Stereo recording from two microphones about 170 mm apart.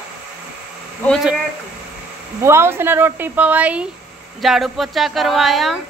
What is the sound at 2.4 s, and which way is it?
Speech, 15° right (ahead or behind).